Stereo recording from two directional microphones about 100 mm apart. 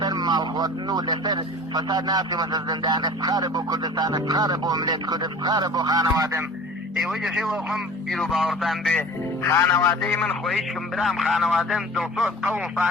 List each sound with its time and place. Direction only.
0.0 s speech: 45° right (ahead or behind)
7.0 s speech: 5° right (ahead or behind)
9.4 s speech: 30° left (ahead or behind)
9.9 s speech: 10° left (ahead or behind)
10.4 s speech: centre (ahead or behind)
12.5 s speech: 15° right (ahead or behind)